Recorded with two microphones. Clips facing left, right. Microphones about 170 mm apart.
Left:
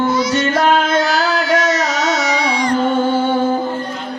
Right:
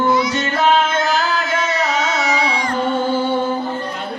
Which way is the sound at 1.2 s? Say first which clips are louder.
Left 5 dB; 75° left (ahead or behind).